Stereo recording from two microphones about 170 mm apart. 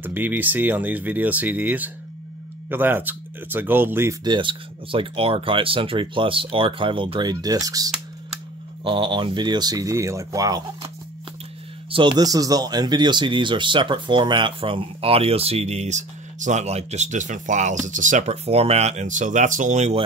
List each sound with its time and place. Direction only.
0.0 s speech: 10° right (ahead or behind)
11.9 s speech: 30° right (ahead or behind)